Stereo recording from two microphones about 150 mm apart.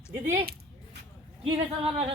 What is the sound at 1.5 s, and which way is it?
Speech, 35° right (ahead or behind).